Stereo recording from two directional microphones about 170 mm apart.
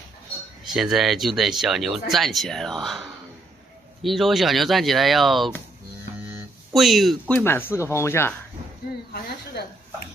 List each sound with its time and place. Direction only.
0.7 s speech: centre (ahead or behind)
6.7 s speech: centre (ahead or behind)
7.3 s speech: 10° left (ahead or behind)
9.6 s a woman's voice: 70° left (ahead or behind)